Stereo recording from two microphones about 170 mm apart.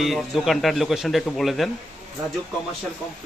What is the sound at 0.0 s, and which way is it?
A man's voice, centre (ahead or behind).